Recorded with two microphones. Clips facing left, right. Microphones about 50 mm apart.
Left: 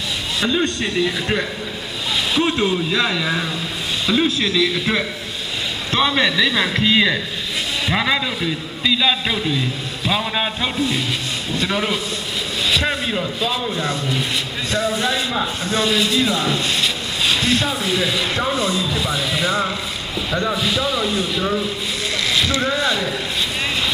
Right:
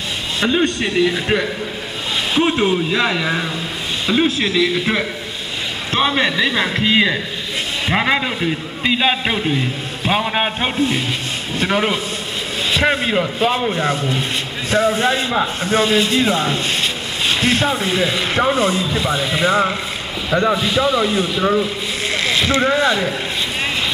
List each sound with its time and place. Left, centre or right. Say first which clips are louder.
0.4 s a man's voice: right 3 dB; centre
14.7 s speech: right 5 dB; centre
16.1 s speech: right 2 dB; right
16.3 s speech: right 1 dB; centre
16.8 s speech: even; centre
18.5 s speech: right 3 dB; centre
22.1 s boat: right 3 dB; right
22.8 s speech: right 4 dB; centre